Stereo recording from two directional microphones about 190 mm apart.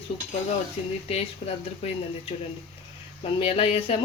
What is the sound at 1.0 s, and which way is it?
Speech, 30° left (ahead or behind).